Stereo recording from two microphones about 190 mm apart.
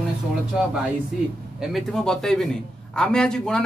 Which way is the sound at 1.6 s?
Centre (ahead or behind).